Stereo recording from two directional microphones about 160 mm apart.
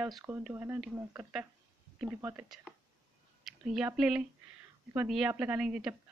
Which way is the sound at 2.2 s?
15° right (ahead or behind).